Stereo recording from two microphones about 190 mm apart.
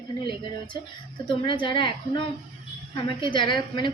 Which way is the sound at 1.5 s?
25° left (ahead or behind).